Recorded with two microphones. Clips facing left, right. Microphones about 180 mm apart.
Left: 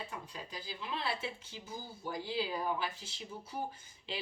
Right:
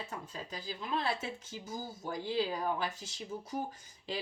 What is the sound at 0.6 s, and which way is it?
Speech, 40° right (ahead or behind).